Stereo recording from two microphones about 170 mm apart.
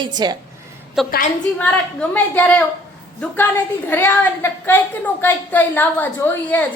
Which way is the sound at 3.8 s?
10° left (ahead or behind).